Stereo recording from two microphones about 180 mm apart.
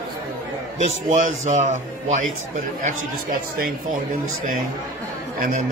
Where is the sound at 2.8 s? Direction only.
55° right (ahead or behind).